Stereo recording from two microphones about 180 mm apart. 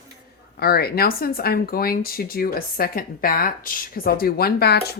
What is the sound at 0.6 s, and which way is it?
Speech, 60° left (ahead or behind).